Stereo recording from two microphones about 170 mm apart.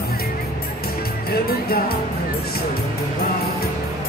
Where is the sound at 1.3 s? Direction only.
65° left (ahead or behind).